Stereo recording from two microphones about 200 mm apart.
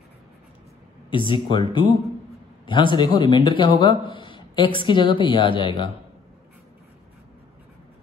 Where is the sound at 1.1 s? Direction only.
25° left (ahead or behind).